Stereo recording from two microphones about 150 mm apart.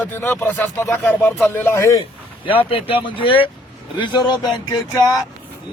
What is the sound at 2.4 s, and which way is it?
Speech, 35° left (ahead or behind).